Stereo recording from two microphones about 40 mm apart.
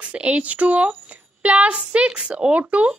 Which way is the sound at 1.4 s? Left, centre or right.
Right.